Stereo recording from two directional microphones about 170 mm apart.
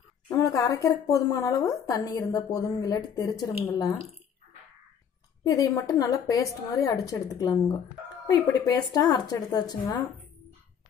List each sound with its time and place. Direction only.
0.3 s a woman's voice: 20° left (ahead or behind)
5.4 s a woman's voice: 20° left (ahead or behind)